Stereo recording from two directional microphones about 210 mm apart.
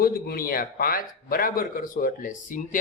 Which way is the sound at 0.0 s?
45° left (ahead or behind).